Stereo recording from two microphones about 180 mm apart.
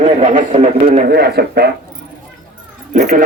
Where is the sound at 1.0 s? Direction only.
60° right (ahead or behind).